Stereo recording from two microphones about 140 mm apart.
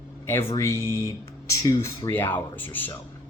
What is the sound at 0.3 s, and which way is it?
Speech, 15° left (ahead or behind).